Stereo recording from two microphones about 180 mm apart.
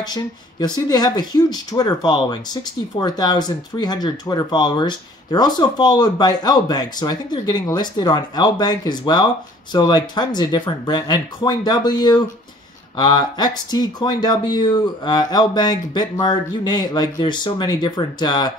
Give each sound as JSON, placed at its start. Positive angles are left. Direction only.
{"t": 0.0, "sound": "speech", "side_deg": 20}